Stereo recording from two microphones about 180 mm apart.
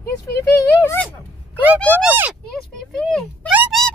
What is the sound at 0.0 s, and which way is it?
Speech, 15° left (ahead or behind).